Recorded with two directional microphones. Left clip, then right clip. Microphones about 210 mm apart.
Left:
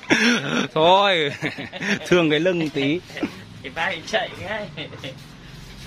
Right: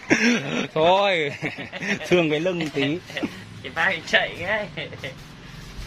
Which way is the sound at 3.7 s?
50° right (ahead or behind).